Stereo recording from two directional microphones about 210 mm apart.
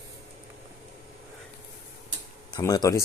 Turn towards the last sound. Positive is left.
turn(degrees=15)  # may be behind; listen again after turning